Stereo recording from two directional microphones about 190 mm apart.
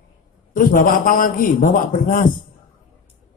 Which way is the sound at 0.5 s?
45° left (ahead or behind).